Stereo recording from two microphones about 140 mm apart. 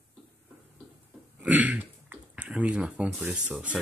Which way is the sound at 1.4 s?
10° right (ahead or behind).